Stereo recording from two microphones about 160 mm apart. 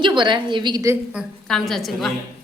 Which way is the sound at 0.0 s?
30° right (ahead or behind).